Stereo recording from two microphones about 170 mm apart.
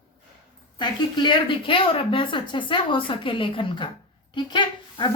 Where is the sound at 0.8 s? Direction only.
25° left (ahead or behind).